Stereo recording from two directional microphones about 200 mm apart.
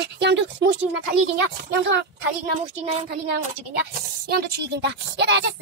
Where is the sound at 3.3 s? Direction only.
50° right (ahead or behind).